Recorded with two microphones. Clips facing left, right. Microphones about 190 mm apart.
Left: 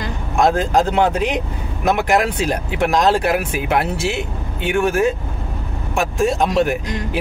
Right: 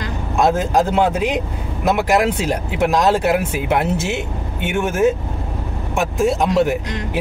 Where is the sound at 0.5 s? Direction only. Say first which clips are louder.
Even; 20° right (ahead or behind).